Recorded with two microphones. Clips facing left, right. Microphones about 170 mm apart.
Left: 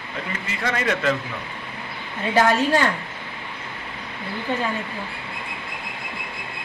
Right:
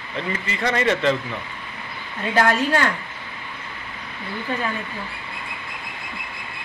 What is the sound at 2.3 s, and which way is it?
Speech, 20° left (ahead or behind).